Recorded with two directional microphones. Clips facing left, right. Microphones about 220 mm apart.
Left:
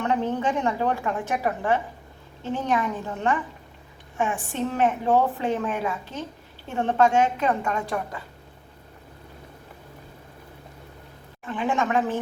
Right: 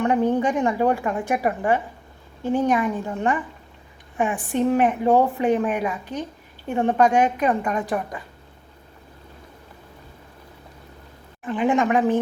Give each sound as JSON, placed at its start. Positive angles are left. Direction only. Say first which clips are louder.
{"t": 0.0, "sound": "a woman's voice", "louder": "right 5 dB", "side_deg": -15}
{"t": 11.4, "sound": "a woman's voice", "louder": "right 5 dB", "side_deg": -15}